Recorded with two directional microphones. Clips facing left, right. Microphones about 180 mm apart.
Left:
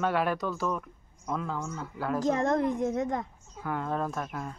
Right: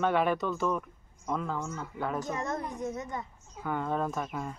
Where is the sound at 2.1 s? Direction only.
90° left.